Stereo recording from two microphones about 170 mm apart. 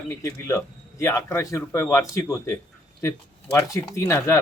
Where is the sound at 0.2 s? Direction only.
15° left (ahead or behind).